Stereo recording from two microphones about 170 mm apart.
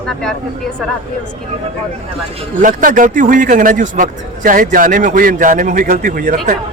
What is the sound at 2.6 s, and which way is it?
A man's voice, 50° right (ahead or behind).